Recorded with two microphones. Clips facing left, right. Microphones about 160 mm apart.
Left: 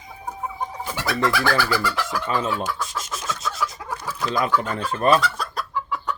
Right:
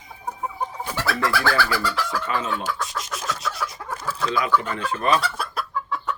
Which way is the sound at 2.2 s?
40° left (ahead or behind).